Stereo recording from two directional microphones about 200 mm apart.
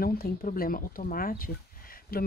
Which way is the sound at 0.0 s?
45° left (ahead or behind).